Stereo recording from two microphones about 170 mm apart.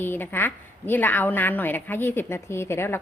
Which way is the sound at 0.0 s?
10° left (ahead or behind).